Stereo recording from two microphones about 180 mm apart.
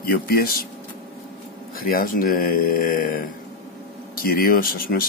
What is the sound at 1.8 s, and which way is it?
Speech, 55° left (ahead or behind).